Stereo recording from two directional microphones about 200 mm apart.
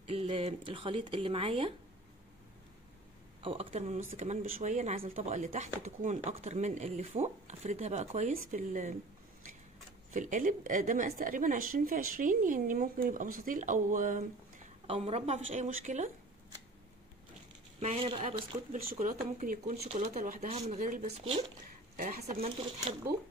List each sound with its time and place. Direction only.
0.0 s speech: 30° right (ahead or behind)
3.4 s speech: 30° right (ahead or behind)
10.1 s speech: 40° right (ahead or behind)
14.9 s speech: 30° right (ahead or behind)
17.7 s speech: 30° right (ahead or behind)
21.9 s speech: 45° right (ahead or behind)